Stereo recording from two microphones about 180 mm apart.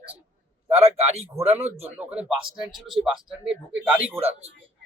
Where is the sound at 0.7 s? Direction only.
35° right (ahead or behind).